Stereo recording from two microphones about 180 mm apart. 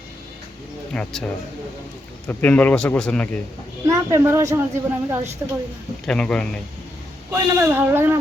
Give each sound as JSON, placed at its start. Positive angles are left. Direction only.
{"t": 0.9, "sound": "a man's voice", "side_deg": 5}
{"t": 3.8, "sound": "a child's voice", "side_deg": -15}
{"t": 6.1, "sound": "a man's voice", "side_deg": 5}
{"t": 7.3, "sound": "a child's voice", "side_deg": -10}